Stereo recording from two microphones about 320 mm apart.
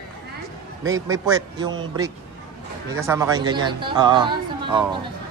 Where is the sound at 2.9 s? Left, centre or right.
Centre.